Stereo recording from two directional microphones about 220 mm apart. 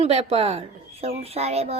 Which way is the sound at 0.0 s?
30° right (ahead or behind).